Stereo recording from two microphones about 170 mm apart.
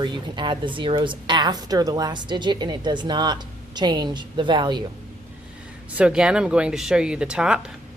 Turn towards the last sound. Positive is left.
turn(degrees=-5)  # may be behind; listen again after turning